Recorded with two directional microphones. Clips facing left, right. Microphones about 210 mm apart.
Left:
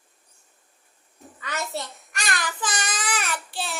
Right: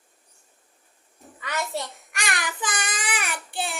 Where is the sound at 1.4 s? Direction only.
15° right (ahead or behind).